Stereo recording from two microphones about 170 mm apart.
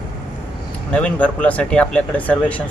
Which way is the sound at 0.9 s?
10° left (ahead or behind).